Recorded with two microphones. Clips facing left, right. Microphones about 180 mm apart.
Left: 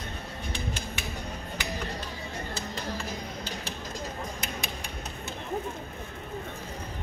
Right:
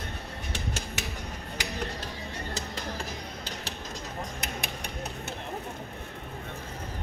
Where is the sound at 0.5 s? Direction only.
85° right.